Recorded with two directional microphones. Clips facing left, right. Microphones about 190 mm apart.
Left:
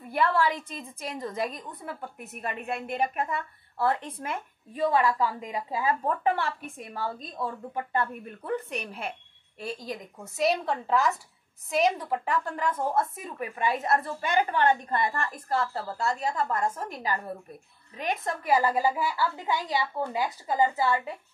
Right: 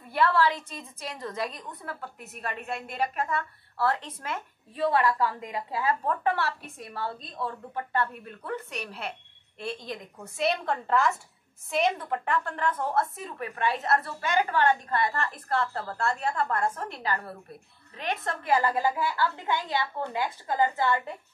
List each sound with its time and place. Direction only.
0.1 s a woman's voice: 15° left (ahead or behind)
9.8 s a woman's voice: 5° left (ahead or behind)